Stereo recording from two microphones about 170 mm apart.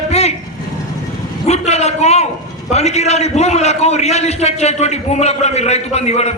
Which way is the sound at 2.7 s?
40° left (ahead or behind).